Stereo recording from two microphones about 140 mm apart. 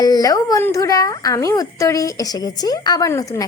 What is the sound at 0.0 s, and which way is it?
A woman's voice, 25° left (ahead or behind).